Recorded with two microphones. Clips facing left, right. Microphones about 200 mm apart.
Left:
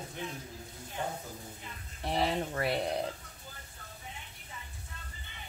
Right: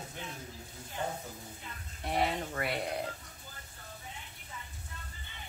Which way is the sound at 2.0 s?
30° left (ahead or behind).